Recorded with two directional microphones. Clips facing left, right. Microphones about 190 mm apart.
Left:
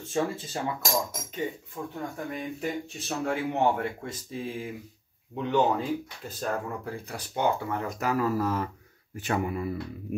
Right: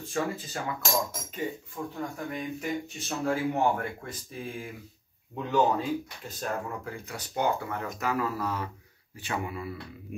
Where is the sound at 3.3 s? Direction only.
25° left (ahead or behind).